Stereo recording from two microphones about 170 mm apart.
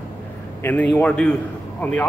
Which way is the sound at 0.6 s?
15° left (ahead or behind).